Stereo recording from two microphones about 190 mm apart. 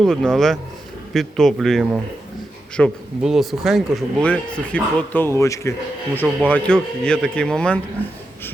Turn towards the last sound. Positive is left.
turn(degrees=5)  # may be behind; listen again after turning